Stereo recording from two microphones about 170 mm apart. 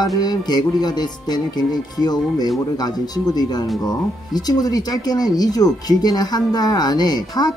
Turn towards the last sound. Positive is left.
turn(degrees=25)  # may be behind; listen again after turning